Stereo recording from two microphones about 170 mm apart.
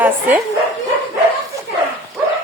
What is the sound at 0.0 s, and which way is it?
Speech, 10° right (ahead or behind).